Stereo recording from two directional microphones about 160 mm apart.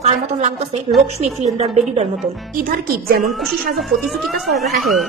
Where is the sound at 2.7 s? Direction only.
60° right (ahead or behind).